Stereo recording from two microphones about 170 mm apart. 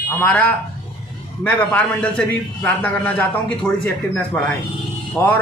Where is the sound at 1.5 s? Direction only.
10° left (ahead or behind).